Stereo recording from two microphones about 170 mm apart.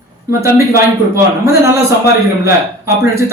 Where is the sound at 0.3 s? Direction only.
15° right (ahead or behind).